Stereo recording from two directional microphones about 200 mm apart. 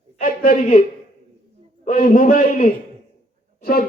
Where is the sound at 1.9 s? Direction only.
40° left (ahead or behind).